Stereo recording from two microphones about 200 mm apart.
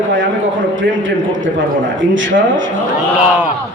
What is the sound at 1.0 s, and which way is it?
A man's voice, 70° right (ahead or behind).